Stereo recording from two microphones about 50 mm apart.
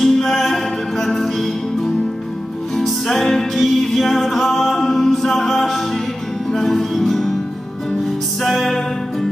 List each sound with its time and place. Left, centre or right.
0.0 s music: centre